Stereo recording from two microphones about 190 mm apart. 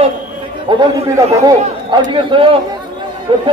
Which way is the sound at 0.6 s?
20° right (ahead or behind).